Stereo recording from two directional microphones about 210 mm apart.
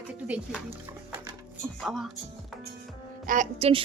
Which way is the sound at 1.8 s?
Centre (ahead or behind).